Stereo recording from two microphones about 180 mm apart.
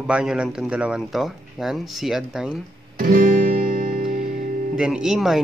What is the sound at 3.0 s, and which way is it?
Guitar, 50° right (ahead or behind).